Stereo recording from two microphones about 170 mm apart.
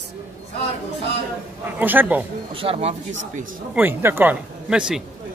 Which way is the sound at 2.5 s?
35° right (ahead or behind).